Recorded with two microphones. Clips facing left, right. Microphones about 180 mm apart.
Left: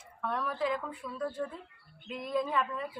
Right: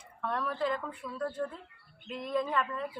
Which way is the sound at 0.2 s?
Centre (ahead or behind).